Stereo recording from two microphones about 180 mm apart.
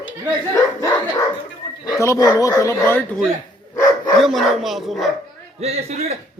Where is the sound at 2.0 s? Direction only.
15° left (ahead or behind).